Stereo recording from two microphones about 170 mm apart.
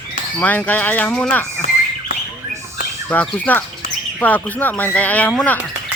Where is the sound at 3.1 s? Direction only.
10° left (ahead or behind).